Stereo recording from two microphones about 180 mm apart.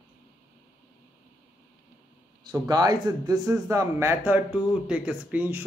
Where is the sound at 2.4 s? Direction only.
20° right (ahead or behind).